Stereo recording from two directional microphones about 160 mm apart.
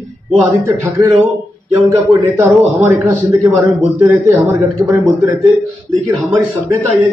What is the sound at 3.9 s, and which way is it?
Speech, 15° right (ahead or behind).